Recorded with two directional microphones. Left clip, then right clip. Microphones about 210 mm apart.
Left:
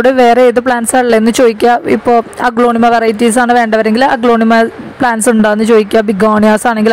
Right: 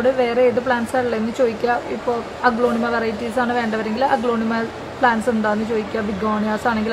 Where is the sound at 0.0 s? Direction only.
50° left (ahead or behind).